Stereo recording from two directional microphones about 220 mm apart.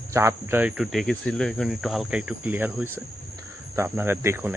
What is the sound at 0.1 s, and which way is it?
Speech, 10° right (ahead or behind).